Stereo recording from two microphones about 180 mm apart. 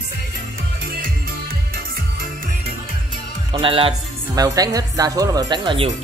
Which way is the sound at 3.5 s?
30° right (ahead or behind).